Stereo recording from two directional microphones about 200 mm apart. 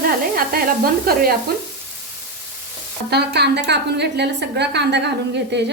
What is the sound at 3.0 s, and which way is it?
A woman's voice, 55° right (ahead or behind).